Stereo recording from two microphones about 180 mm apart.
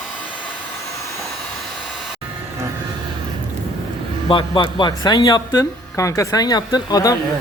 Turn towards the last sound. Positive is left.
turn(degrees=20)  # may be behind; listen again after turning